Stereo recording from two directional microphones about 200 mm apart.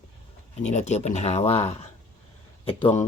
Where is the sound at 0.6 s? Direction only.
35° left (ahead or behind).